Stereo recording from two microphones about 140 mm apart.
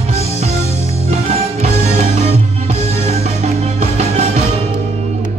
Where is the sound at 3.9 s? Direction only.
55° right (ahead or behind).